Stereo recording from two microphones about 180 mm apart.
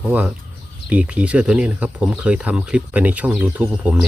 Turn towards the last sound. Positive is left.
turn(degrees=-10)  # may be behind; listen again after turning